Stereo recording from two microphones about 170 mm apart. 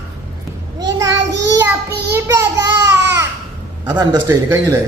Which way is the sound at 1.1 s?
90° right.